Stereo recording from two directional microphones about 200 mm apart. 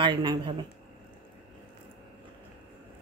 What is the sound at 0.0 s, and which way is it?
Speech, 25° right (ahead or behind).